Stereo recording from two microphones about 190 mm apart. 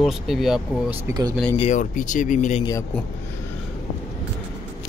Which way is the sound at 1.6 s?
40° left (ahead or behind).